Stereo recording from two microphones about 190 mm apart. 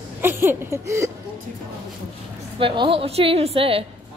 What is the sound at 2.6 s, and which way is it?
A woman's voice, 30° right (ahead or behind).